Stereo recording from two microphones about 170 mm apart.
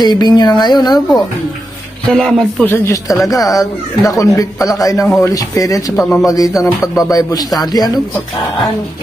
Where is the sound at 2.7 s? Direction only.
15° left (ahead or behind).